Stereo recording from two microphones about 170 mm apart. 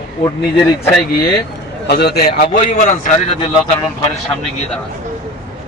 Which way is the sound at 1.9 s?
75° left (ahead or behind).